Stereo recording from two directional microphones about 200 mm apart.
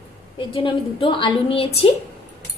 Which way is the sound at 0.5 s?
25° left (ahead or behind).